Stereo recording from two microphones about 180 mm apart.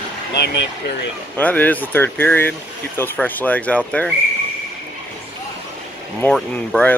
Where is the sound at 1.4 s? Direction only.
10° left (ahead or behind).